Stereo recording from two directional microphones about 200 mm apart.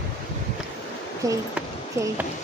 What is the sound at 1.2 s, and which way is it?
Speech, 15° right (ahead or behind).